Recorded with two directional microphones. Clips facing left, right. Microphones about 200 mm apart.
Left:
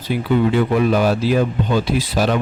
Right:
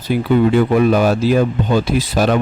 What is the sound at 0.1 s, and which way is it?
Speech, 45° right (ahead or behind).